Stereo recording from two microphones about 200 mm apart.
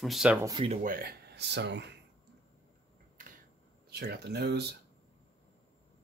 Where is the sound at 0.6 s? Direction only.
45° right (ahead or behind); by 1.8 s 60° right (ahead or behind).